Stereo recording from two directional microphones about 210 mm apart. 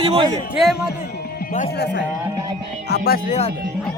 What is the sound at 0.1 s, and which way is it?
Speech, 25° right (ahead or behind).